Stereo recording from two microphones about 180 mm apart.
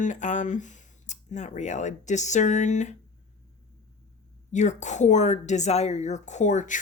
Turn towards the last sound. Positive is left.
turn(degrees=45)  # may be behind; listen again after turning